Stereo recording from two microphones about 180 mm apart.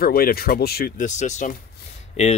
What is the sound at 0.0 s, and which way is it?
Speech, 55° left (ahead or behind).